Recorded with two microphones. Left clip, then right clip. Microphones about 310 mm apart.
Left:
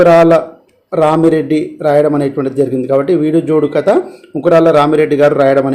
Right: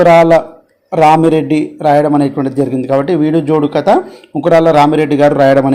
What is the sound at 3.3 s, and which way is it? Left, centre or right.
A man's voice, centre.